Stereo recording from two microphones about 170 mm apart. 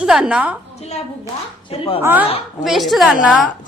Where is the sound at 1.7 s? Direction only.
35° left (ahead or behind).